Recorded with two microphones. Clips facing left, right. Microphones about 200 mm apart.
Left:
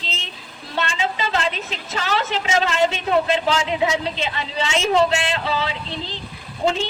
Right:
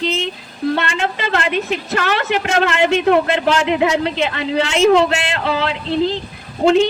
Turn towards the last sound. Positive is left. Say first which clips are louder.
# right 9 dB
turn(degrees=-65)  # may be behind; listen again after turning